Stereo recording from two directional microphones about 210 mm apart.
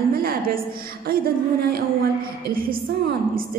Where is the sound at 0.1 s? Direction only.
45° right (ahead or behind).